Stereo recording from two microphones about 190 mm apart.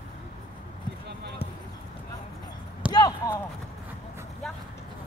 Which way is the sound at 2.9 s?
20° left (ahead or behind).